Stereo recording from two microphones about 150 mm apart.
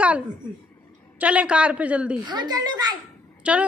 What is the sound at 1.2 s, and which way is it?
Speech, 10° right (ahead or behind).